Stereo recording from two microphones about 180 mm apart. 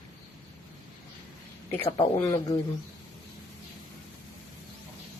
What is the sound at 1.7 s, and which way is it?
Speech, 30° left (ahead or behind).